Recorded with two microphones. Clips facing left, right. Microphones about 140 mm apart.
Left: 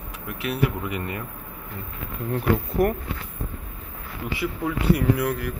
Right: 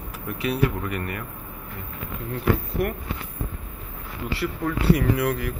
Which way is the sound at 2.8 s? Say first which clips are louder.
Left 5 dB; 40° left (ahead or behind).